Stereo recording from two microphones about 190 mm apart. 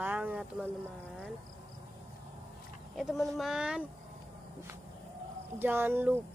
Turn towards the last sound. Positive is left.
turn(degrees=-10)  # may be behind; listen again after turning